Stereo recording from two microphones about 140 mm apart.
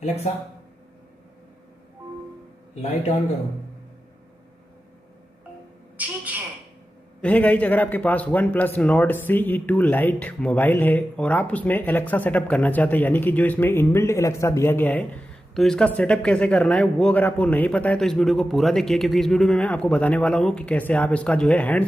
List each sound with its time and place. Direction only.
0.0 s a man's voice: 50° left (ahead or behind)
2.7 s a man's voice: 50° left (ahead or behind)
5.9 s a sound: 10° right (ahead or behind)
7.2 s a man's voice: 10° left (ahead or behind)